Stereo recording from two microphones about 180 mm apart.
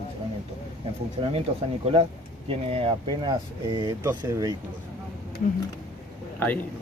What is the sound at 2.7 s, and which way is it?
Speech, 30° right (ahead or behind).